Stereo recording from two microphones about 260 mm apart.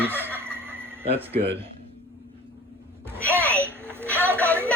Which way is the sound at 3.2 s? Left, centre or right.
Centre.